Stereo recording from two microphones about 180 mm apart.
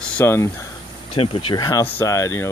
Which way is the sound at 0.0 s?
15° left (ahead or behind).